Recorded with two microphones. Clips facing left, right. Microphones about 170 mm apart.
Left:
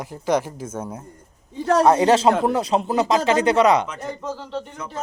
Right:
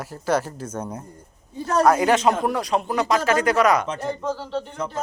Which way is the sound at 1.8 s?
25° left (ahead or behind).